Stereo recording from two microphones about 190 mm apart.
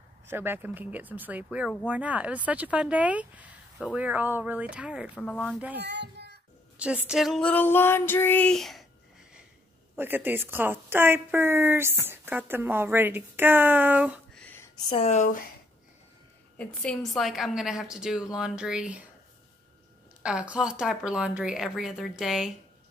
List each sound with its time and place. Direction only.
0.3 s a woman's voice: 10° right (ahead or behind)
5.2 s a woman's voice: 5° left (ahead or behind)
5.6 s a woman's voice: 10° right (ahead or behind)
5.9 s a sound: 65° right (ahead or behind)
6.8 s a woman's voice: 5° right (ahead or behind)
9.9 s a woman's voice: 10° right (ahead or behind)
14.9 s speech: 30° left (ahead or behind)
16.5 s a woman's voice: 5° left (ahead or behind)
20.2 s a woman's voice: 5° right (ahead or behind)